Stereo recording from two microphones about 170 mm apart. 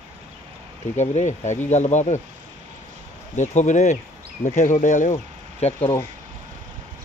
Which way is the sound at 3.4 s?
45° left (ahead or behind).